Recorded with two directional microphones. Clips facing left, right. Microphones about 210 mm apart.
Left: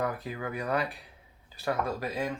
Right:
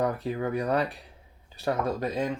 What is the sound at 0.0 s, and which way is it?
Speech, 30° right (ahead or behind).